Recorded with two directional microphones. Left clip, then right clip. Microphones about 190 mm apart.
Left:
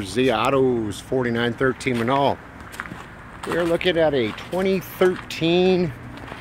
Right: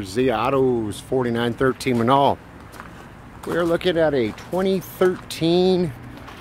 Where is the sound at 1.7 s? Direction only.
30° right (ahead or behind).